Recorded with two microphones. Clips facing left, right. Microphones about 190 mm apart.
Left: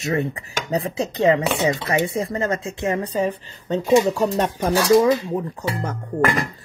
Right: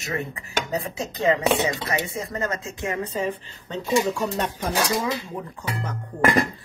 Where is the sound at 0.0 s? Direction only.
35° left (ahead or behind).